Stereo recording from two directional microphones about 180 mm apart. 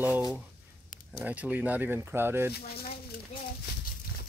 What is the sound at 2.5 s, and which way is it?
Speech, 60° left (ahead or behind).